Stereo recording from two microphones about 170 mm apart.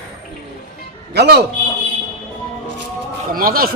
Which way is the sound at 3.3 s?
60° right (ahead or behind).